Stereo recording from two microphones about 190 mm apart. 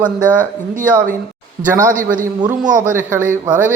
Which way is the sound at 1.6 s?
15° right (ahead or behind).